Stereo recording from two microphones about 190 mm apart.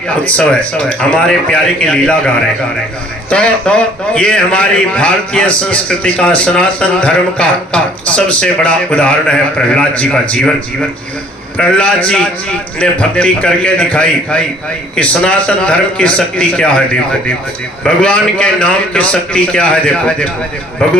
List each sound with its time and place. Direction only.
0.3 s a man's voice: 5° left (ahead or behind)
11.5 s a man's voice: 5° left (ahead or behind)
17.8 s a man's voice: 5° left (ahead or behind)